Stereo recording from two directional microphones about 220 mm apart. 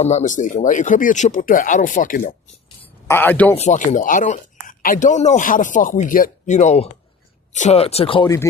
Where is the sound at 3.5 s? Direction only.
35° left (ahead or behind).